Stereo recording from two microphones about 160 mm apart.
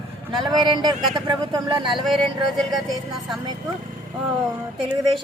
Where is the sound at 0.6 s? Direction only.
25° right (ahead or behind).